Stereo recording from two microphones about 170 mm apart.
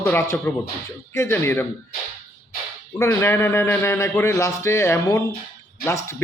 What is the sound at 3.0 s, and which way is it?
Speech, 15° left (ahead or behind).